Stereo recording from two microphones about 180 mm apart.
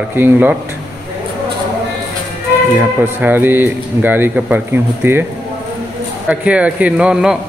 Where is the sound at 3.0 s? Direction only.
10° right (ahead or behind).